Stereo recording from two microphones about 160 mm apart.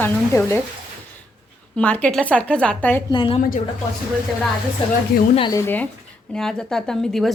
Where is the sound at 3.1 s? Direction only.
30° left (ahead or behind).